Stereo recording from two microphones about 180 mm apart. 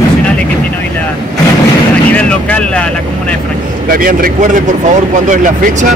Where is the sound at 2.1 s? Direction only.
5° left (ahead or behind).